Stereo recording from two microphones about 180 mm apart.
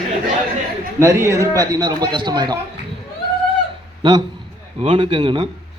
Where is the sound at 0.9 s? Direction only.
15° right (ahead or behind).